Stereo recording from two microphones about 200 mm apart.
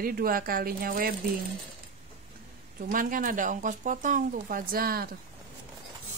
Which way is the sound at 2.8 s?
45° right (ahead or behind).